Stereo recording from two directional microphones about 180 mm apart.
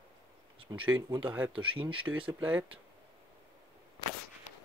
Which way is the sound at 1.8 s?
30° right (ahead or behind).